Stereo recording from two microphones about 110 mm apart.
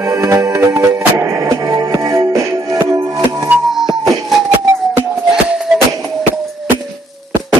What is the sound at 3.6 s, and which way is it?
Music, 5° right (ahead or behind).